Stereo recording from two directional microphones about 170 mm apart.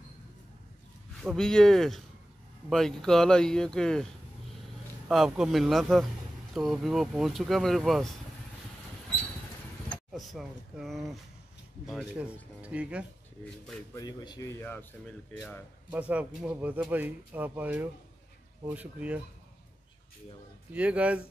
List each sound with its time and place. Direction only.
1.2 s speech: 5° left (ahead or behind)
9.8 s speech: centre (ahead or behind)
13.9 s speech: 25° left (ahead or behind)
15.9 s speech: 10° right (ahead or behind)
20.7 s speech: 10° right (ahead or behind)